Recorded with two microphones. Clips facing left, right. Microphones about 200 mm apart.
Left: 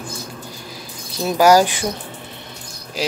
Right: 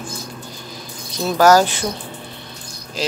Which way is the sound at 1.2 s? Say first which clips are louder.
Even; 10° left (ahead or behind).